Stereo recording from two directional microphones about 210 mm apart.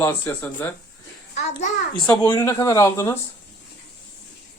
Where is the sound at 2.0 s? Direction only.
10° left (ahead or behind).